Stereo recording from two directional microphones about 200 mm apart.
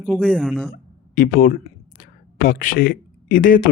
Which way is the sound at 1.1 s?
45° left (ahead or behind).